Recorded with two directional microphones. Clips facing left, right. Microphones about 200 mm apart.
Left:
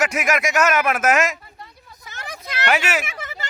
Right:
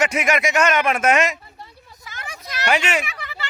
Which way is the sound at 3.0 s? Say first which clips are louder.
Left 1 dB; 45° left (ahead or behind).